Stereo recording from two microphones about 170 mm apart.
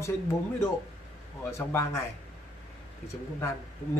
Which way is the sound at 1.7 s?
15° left (ahead or behind).